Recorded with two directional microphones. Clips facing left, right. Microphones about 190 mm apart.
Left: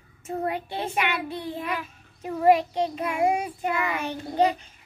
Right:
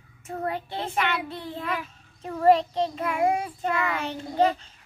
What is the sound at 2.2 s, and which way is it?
A child's voice, 10° left (ahead or behind).